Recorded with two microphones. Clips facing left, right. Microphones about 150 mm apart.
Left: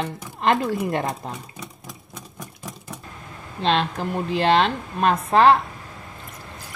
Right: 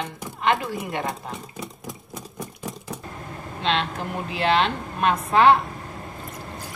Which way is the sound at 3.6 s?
40° left (ahead or behind).